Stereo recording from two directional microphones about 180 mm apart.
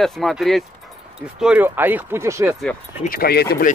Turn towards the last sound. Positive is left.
turn(degrees=60)  # may be behind; listen again after turning